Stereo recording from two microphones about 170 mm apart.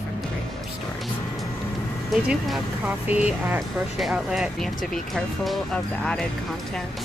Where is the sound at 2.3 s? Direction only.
5° right (ahead or behind).